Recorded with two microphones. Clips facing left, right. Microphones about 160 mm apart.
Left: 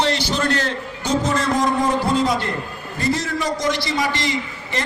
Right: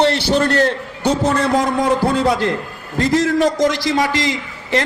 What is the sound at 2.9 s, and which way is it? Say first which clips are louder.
A man's voice: right 8 dB; 90° right.